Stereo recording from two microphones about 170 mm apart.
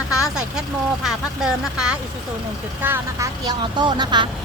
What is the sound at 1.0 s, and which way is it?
Speech, 5° right (ahead or behind).